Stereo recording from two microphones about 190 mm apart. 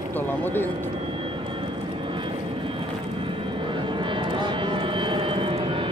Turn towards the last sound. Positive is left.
turn(degrees=-30)  # may be behind; listen again after turning